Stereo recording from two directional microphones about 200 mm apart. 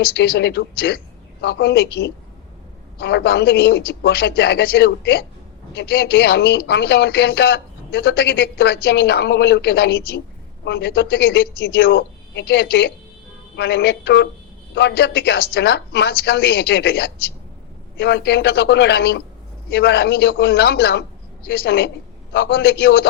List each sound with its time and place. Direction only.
0.0 s a woman's voice: 55° left (ahead or behind)